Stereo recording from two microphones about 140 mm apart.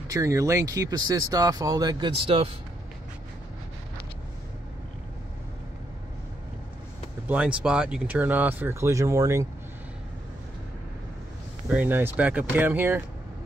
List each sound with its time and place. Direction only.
0.1 s speech: 20° right (ahead or behind); by 2.5 s 45° right (ahead or behind)
7.2 s speech: 10° right (ahead or behind)
11.7 s speech: 15° right (ahead or behind)